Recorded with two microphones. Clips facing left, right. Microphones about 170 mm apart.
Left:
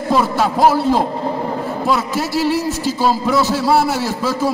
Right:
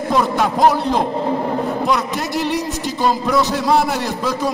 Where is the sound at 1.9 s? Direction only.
5° left (ahead or behind).